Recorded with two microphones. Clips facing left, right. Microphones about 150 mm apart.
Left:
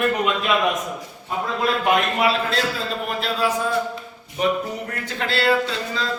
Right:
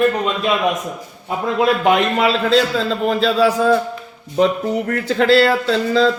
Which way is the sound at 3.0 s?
90° right.